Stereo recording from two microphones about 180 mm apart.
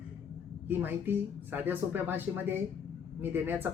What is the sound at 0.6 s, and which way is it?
Speech, 10° right (ahead or behind).